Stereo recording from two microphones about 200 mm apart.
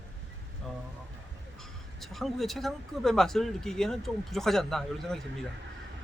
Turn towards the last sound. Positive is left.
turn(degrees=0)  # may be behind; listen again after turning